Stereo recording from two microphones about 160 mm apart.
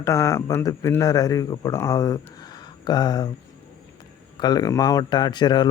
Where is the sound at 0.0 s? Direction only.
20° left (ahead or behind).